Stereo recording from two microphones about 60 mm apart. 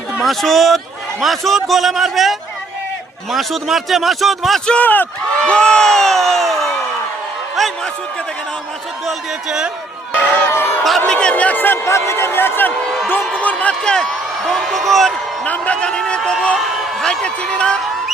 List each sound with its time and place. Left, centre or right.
0.2 s a man's voice: centre
3.3 s a man's voice: centre
4.6 s a man's voice: centre
5.4 s crowd: centre
10.2 s a sound: left
11.0 s speech: centre
11.5 s speech: left
11.9 s speech: left
13.4 s speech: left
13.9 s speech: centre
15.4 s a sound: left
17.0 s a man's voice: centre